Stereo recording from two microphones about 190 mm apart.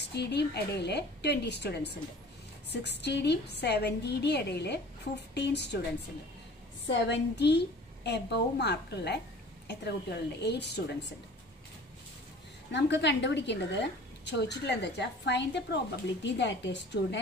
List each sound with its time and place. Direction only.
0.1 s a woman's voice: 60° left (ahead or behind)
6.9 s a woman's voice: 65° left (ahead or behind)
12.7 s a woman's voice: 65° left (ahead or behind)